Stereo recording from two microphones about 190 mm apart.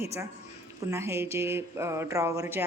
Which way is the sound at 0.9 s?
15° right (ahead or behind).